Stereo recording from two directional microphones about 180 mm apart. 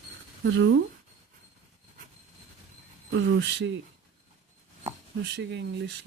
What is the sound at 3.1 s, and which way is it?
Speech, 80° right.